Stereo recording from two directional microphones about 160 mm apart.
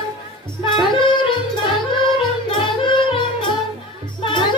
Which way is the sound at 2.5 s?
30° left (ahead or behind).